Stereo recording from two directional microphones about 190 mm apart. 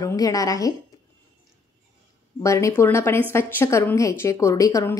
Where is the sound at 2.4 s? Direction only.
15° left (ahead or behind).